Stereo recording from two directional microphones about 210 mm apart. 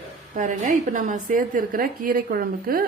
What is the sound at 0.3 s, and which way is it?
A woman's voice, 35° right (ahead or behind).